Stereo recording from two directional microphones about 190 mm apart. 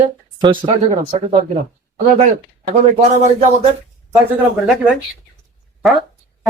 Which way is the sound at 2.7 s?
35° right (ahead or behind).